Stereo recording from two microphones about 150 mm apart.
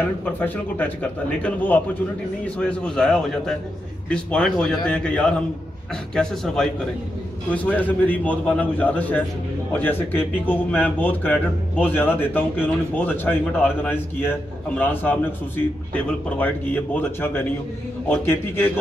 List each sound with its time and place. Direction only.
0.2 s a man's voice: 10° left (ahead or behind)